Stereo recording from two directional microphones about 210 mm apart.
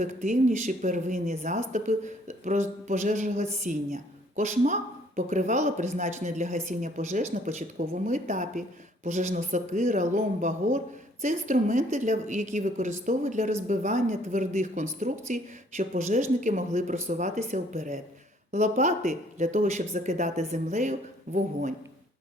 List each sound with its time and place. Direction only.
0.0 s speech: 35° right (ahead or behind)